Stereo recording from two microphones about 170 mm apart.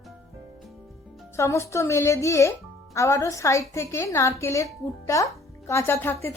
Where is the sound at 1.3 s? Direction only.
15° left (ahead or behind).